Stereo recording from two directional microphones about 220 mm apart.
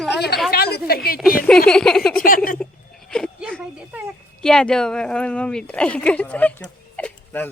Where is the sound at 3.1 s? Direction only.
5° left (ahead or behind).